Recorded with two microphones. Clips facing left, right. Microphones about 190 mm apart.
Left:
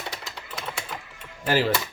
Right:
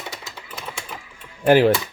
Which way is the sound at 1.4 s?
60° right (ahead or behind).